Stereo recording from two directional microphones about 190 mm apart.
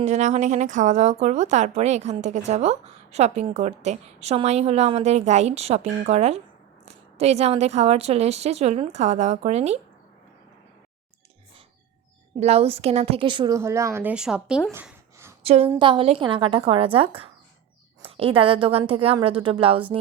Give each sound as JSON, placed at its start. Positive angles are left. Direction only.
{"t": 0.0, "sound": "a woman's voice", "side_deg": -40}
{"t": 12.4, "sound": "a woman's voice", "side_deg": -30}
{"t": 14.7, "sound": "a sound", "side_deg": -10}
{"t": 15.4, "sound": "a woman's voice", "side_deg": -30}